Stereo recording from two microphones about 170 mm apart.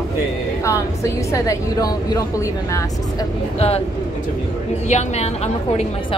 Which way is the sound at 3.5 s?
35° left (ahead or behind).